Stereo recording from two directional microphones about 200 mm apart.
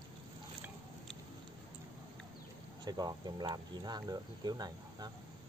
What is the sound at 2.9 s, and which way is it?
Speech, 20° right (ahead or behind).